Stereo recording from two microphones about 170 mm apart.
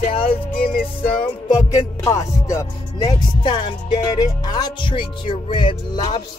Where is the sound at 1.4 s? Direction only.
20° left (ahead or behind).